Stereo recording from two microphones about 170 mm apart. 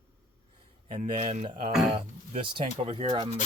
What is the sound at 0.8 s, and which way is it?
Speech, 45° right (ahead or behind).